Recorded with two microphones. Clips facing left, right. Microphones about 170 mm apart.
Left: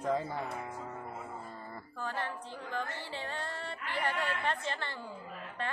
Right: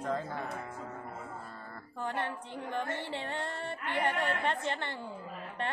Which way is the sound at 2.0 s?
20° right (ahead or behind).